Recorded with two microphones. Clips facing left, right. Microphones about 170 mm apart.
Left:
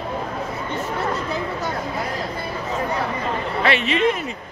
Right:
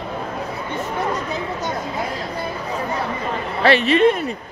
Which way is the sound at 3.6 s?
35° right (ahead or behind).